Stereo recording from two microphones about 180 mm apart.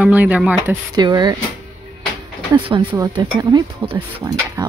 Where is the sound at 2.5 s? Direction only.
25° right (ahead or behind).